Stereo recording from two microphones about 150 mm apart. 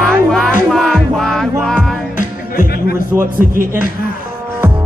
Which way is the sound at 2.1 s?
60° left (ahead or behind).